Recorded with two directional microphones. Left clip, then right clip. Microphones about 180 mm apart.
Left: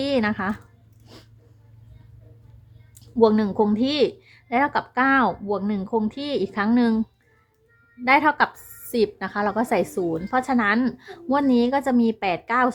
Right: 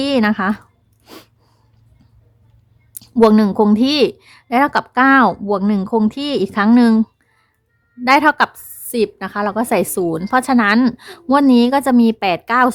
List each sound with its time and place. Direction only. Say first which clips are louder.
0.0 s a woman's voice: right 7 dB; 35° right (ahead or behind)
2.9 s a woman's voice: right 6 dB; 40° right (ahead or behind)
8.0 s a woman's voice: right 6 dB; 35° right (ahead or behind)